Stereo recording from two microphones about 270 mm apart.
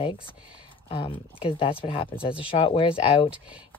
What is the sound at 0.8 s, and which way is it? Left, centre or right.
Speech, centre.